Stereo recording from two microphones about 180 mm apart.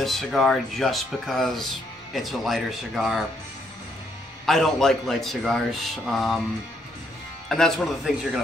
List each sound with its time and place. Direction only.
0.0 s speech: centre (ahead or behind)
4.5 s speech: centre (ahead or behind)
7.4 s speech: 5° left (ahead or behind)